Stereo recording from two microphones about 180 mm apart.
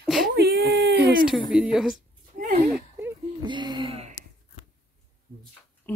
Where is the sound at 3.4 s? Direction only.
25° right (ahead or behind).